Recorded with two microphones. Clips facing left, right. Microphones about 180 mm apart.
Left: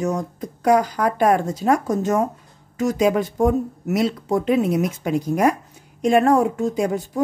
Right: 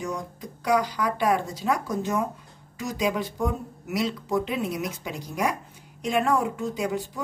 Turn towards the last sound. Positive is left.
turn(degrees=50)  # may be behind; listen again after turning